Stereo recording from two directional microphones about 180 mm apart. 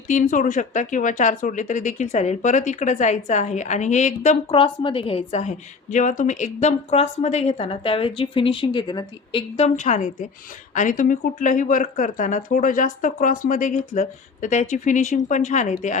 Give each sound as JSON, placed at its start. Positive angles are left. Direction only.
{"t": 0.1, "sound": "speech", "side_deg": 45}
{"t": 4.5, "sound": "a woman's voice", "side_deg": 30}
{"t": 9.6, "sound": "a woman's voice", "side_deg": 40}